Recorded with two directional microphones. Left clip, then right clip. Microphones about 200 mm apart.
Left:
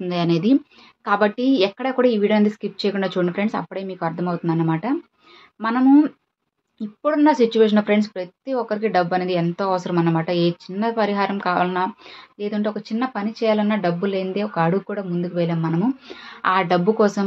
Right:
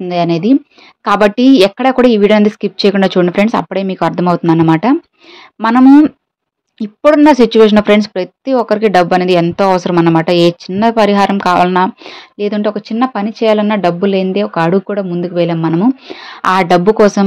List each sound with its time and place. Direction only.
0.0 s speech: 30° right (ahead or behind)
1.0 s speech: 50° right (ahead or behind)